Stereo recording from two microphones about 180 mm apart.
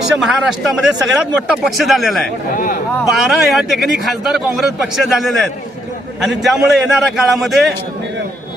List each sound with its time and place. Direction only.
0.2 s speech: 5° right (ahead or behind)
2.6 s speech: 45° left (ahead or behind)
3.0 s speech: centre (ahead or behind)